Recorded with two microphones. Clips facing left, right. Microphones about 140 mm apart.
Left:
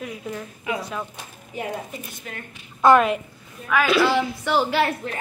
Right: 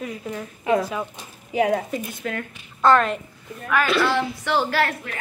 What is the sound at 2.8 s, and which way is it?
A woman's voice, 10° left (ahead or behind).